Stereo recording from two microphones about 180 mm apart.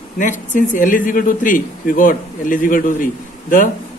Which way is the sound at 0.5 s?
45° left (ahead or behind).